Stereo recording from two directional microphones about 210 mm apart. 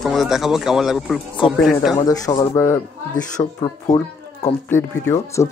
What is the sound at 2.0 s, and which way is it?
A man's voice, 20° left (ahead or behind).